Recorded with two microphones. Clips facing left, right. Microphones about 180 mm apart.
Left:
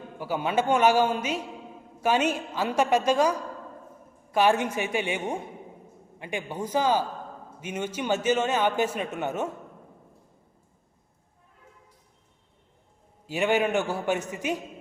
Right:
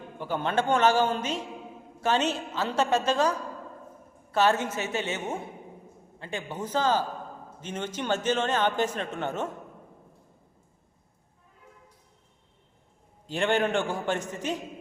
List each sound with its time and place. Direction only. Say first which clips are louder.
0.2 s a man's voice: left 1 dB; 10° left (ahead or behind)
13.2 s a man's voice: left 1 dB; 10° left (ahead or behind)